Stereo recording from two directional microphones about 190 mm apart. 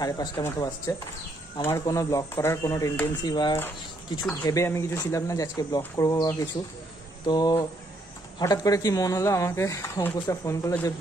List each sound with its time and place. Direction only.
0.0 s speech: 20° left (ahead or behind)